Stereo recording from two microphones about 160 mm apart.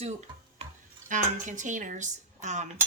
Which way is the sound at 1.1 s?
50° right (ahead or behind).